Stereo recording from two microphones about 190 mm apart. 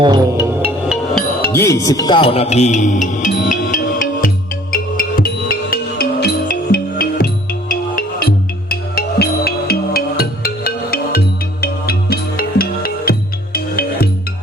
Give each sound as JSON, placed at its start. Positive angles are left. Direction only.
{"t": 0.0, "sound": "music", "side_deg": -20}
{"t": 1.1, "sound": "music", "side_deg": 10}